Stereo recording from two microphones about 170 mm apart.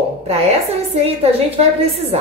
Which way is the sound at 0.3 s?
35° right (ahead or behind).